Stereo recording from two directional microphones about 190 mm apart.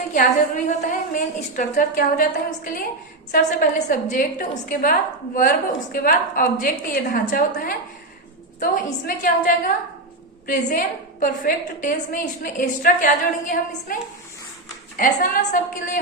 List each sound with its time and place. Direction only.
0.1 s a woman's voice: 45° left (ahead or behind)
3.3 s a woman's voice: 50° left (ahead or behind)
8.7 s a woman's voice: 45° left (ahead or behind)